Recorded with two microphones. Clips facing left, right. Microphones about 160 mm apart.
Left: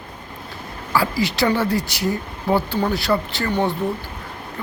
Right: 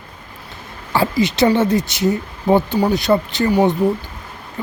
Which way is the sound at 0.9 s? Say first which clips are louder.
Right 4 dB; 20° right (ahead or behind).